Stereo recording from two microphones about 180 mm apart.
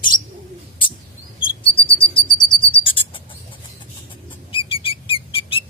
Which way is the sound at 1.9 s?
30° left (ahead or behind).